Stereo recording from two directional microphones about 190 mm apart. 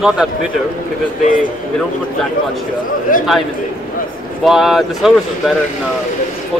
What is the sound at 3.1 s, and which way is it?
Speech, 45° left (ahead or behind).